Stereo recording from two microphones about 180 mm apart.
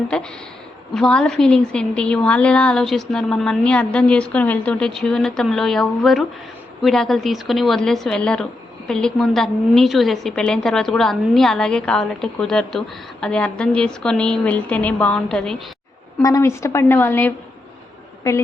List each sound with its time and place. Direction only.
0.9 s a woman's voice: 5° left (ahead or behind)
16.2 s a woman's voice: 15° left (ahead or behind)